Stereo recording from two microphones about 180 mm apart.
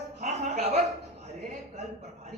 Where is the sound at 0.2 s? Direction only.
40° right (ahead or behind).